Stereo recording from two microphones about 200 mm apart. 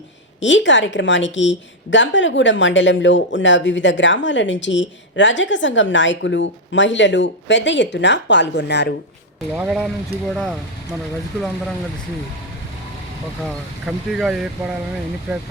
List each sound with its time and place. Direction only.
0.3 s a woman's voice: 65° left (ahead or behind)
9.6 s speech: 5° right (ahead or behind)
13.8 s speech: centre (ahead or behind)